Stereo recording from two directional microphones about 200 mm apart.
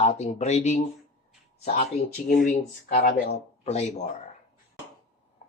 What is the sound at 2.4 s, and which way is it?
Speech, 45° left (ahead or behind).